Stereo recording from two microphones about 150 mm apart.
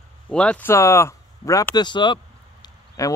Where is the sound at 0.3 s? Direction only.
10° left (ahead or behind).